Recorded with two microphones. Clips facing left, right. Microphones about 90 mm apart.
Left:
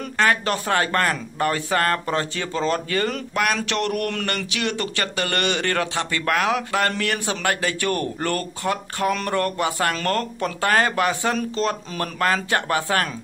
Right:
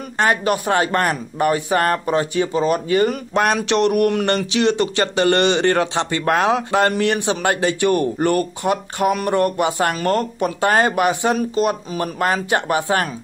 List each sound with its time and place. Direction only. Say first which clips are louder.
0.2 s speech: right 3 dB; 20° right (ahead or behind)